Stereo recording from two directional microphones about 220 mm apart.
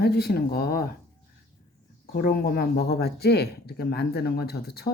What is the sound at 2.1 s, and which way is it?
Speech, 45° left (ahead or behind).